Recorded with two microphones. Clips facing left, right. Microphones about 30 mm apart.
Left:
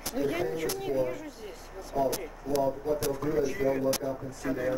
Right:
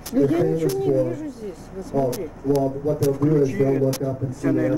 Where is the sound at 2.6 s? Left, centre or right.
Centre.